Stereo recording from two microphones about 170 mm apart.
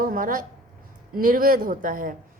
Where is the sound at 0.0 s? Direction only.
55° right (ahead or behind).